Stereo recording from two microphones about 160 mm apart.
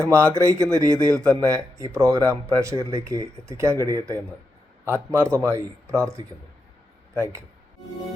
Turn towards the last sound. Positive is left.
turn(degrees=-15)  # may be behind; listen again after turning